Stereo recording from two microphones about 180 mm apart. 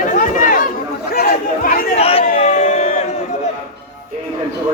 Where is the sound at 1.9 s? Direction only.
35° left (ahead or behind).